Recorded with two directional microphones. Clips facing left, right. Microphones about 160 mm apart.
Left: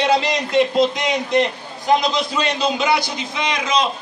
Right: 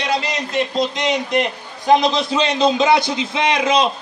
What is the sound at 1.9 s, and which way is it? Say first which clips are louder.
A man's voice: right 3 dB; 25° right (ahead or behind).